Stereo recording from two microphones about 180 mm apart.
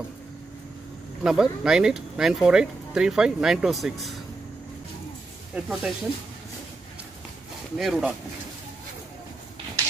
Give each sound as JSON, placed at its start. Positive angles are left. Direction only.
{"t": 1.2, "sound": "speech", "side_deg": -5}
{"t": 5.5, "sound": "speech", "side_deg": 0}
{"t": 7.7, "sound": "speech", "side_deg": 0}